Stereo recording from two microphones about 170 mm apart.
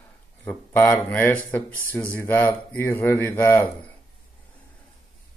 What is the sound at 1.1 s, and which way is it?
Speech, 10° left (ahead or behind).